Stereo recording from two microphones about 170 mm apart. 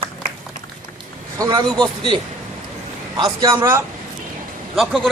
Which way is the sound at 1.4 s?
25° right (ahead or behind).